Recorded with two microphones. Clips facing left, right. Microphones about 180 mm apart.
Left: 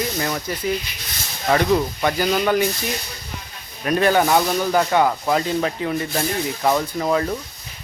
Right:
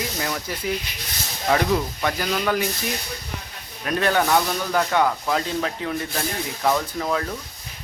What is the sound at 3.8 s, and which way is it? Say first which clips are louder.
Speech: left 4 dB; 5° left (ahead or behind).